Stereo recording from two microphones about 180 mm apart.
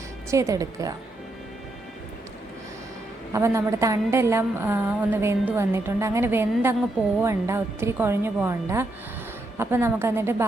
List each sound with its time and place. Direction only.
0.3 s speech: 15° right (ahead or behind)
3.3 s a woman's voice: 15° right (ahead or behind)